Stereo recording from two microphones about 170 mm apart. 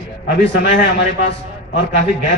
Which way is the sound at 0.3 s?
90° left.